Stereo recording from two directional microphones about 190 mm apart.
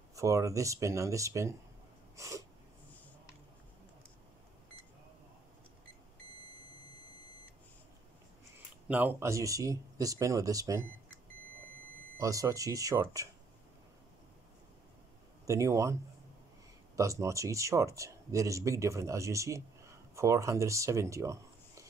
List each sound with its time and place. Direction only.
0.1 s speech: 15° right (ahead or behind)
2.1 s sneeze: 15° right (ahead or behind)
8.8 s speech: 10° right (ahead or behind)
12.2 s speech: 15° right (ahead or behind)
15.4 s speech: 15° right (ahead or behind)